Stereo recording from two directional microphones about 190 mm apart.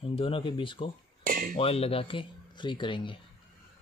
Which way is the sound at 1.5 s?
30° left (ahead or behind).